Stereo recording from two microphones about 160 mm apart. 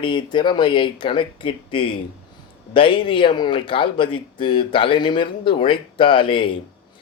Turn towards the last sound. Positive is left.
turn(degrees=30)  # may be behind; listen again after turning